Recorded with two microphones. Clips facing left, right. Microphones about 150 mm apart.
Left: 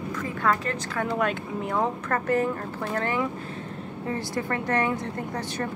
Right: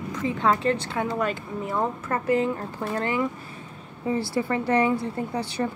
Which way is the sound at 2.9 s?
15° right (ahead or behind).